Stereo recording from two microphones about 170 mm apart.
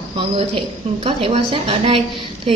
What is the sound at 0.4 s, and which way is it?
A woman's voice, 30° right (ahead or behind).